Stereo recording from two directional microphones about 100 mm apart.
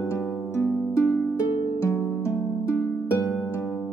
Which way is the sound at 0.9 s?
15° left (ahead or behind).